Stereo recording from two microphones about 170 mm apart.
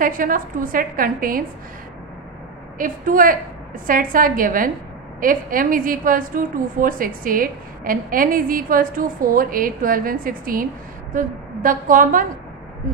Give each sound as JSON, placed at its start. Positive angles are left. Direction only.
{"t": 0.0, "sound": "a woman's voice", "side_deg": -55}
{"t": 2.8, "sound": "a woman's voice", "side_deg": -55}